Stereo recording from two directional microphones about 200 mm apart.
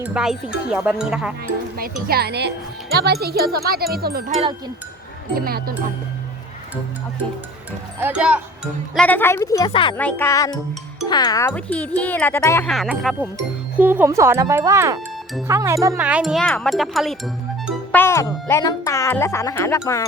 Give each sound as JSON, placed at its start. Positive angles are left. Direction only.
{"t": 0.0, "sound": "speech", "side_deg": -5}
{"t": 1.7, "sound": "speech", "side_deg": -50}
{"t": 5.5, "sound": "speech", "side_deg": -50}
{"t": 7.9, "sound": "speech", "side_deg": -10}
{"t": 9.0, "sound": "speech", "side_deg": 10}
{"t": 10.0, "sound": "speech", "side_deg": 10}
{"t": 12.6, "sound": "speech", "side_deg": 0}
{"t": 18.0, "sound": "speech", "side_deg": 15}